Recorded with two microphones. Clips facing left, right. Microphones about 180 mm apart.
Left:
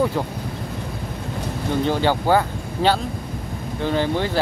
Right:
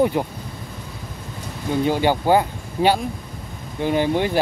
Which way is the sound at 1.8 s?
15° right (ahead or behind).